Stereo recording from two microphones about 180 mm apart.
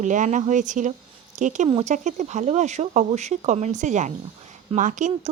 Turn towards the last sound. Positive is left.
turn(degrees=-45)  # may be behind; listen again after turning